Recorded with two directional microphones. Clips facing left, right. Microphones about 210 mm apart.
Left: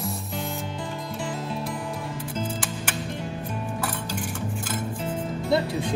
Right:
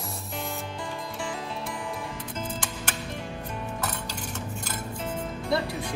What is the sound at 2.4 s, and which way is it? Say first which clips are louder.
Music: left 3 dB; 5° left (ahead or behind).